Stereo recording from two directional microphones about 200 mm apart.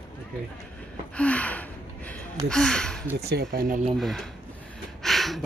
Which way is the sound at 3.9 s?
Centre (ahead or behind).